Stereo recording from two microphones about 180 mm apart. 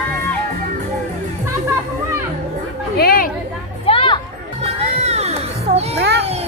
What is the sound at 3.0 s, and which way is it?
Chatter, 55° left (ahead or behind).